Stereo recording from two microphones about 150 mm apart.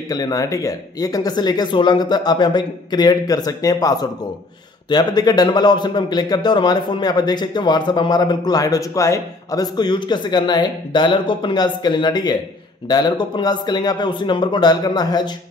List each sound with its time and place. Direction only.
0.1 s a man's voice: 25° left (ahead or behind)